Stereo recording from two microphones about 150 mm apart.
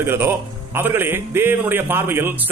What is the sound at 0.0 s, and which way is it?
Speech, 15° right (ahead or behind).